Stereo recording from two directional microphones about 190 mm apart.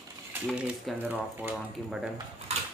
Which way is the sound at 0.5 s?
5° right (ahead or behind).